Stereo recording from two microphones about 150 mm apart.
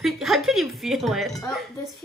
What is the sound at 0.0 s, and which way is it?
Music, centre (ahead or behind).